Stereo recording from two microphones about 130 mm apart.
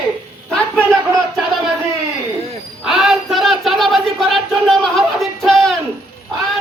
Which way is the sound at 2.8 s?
5° right (ahead or behind).